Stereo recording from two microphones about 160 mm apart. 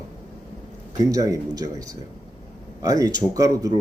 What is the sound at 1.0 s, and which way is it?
Speech, 20° right (ahead or behind).